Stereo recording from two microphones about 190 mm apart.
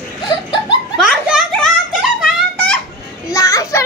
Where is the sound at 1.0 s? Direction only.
5° right (ahead or behind).